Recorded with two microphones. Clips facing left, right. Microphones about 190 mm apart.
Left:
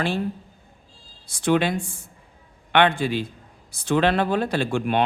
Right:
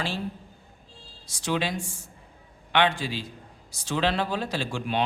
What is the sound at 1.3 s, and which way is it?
A man's voice, 55° left (ahead or behind).